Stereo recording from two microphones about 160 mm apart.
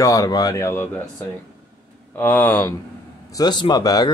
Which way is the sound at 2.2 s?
10° left (ahead or behind).